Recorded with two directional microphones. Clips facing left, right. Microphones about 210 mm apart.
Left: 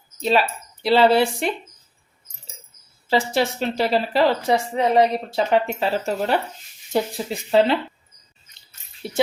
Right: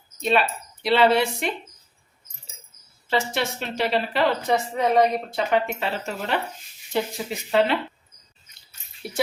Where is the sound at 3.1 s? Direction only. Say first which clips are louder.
Left 4 dB; 35° left (ahead or behind).